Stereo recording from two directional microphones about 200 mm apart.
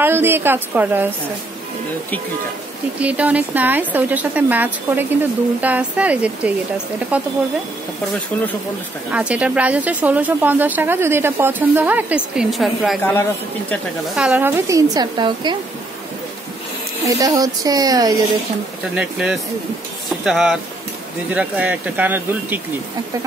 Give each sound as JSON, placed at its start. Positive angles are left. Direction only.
{"t": 0.0, "sound": "speech", "side_deg": -10}
{"t": 3.0, "sound": "speech", "side_deg": -5}
{"t": 9.1, "sound": "speech", "side_deg": -5}
{"t": 13.0, "sound": "speech", "side_deg": 10}
{"t": 14.1, "sound": "speech", "side_deg": -5}
{"t": 17.0, "sound": "speech", "side_deg": -15}
{"t": 18.9, "sound": "speech", "side_deg": -5}